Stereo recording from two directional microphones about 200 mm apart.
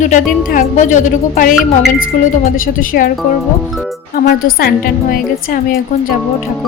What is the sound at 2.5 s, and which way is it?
Speech, 45° left (ahead or behind).